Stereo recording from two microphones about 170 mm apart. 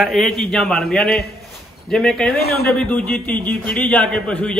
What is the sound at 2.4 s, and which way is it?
Speech, 65° left (ahead or behind).